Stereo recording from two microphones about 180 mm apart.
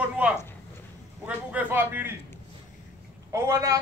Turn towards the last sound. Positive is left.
turn(degrees=-15)  # may be behind; listen again after turning